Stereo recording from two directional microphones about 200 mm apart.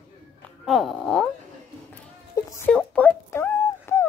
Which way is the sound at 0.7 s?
Centre (ahead or behind).